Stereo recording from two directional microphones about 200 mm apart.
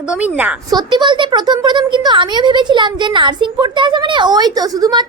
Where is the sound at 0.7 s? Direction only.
20° right (ahead or behind).